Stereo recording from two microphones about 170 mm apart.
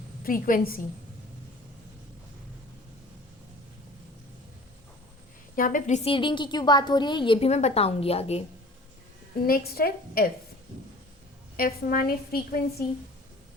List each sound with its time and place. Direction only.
0.3 s a woman's voice: 55° left (ahead or behind)
5.5 s a woman's voice: 50° left (ahead or behind); by 8.4 s 35° left (ahead or behind)
9.5 s a woman's voice: 65° left (ahead or behind)
11.5 s a woman's voice: 60° left (ahead or behind)